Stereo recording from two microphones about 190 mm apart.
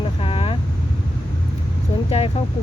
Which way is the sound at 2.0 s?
30° left (ahead or behind).